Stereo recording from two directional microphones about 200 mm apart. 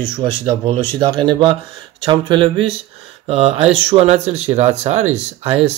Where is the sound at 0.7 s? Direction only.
25° right (ahead or behind).